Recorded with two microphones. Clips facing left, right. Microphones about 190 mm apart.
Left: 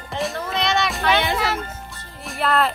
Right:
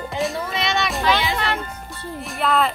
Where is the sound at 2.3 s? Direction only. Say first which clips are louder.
Even; centre (ahead or behind).